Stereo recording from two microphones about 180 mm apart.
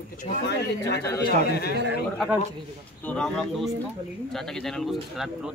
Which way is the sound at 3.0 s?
5° left (ahead or behind).